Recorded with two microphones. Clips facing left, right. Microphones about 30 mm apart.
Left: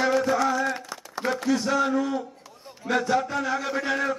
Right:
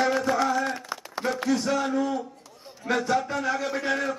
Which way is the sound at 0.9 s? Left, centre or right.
Right.